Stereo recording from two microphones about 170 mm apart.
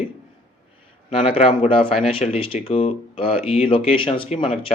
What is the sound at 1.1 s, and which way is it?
Speech, 35° left (ahead or behind).